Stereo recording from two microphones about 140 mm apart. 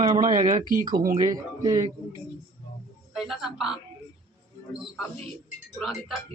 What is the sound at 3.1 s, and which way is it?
Speech, 5° right (ahead or behind).